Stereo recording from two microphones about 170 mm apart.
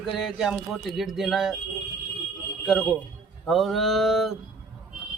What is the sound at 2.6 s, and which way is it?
Speech, centre (ahead or behind).